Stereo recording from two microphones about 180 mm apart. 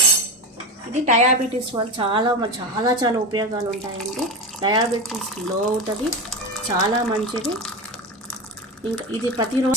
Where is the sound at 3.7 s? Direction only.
Centre (ahead or behind).